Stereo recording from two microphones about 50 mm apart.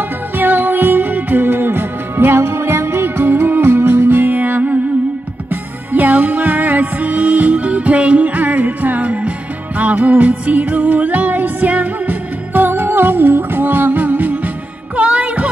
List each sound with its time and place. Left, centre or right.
0.4 s music: right
15.0 s hum: right